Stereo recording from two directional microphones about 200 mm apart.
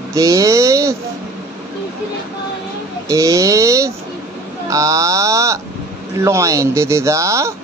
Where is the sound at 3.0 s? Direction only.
15° right (ahead or behind).